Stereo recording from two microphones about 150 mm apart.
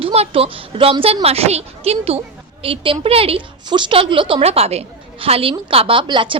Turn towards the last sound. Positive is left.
turn(degrees=-30)  # may be behind; listen again after turning